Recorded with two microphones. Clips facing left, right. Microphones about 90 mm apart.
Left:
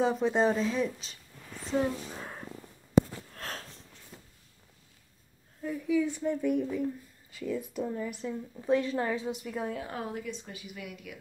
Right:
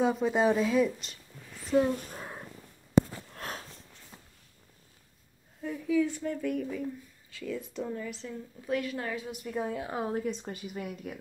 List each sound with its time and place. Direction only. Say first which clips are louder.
0.0 s speech: even; centre (ahead or behind)
1.7 s speech: right 4 dB; 10° left (ahead or behind)
2.1 s a sound: even; 5° right (ahead or behind)
3.3 s sniff: right 1 dB; 15° right (ahead or behind)
5.6 s speech: right 1 dB; 5° left (ahead or behind)
8.5 s a woman's voice: left 5 dB; 25° left (ahead or behind)
9.5 s a woman's voice: right 2 dB; 5° right (ahead or behind)
10.0 s speech: right 5 dB; 40° right (ahead or behind)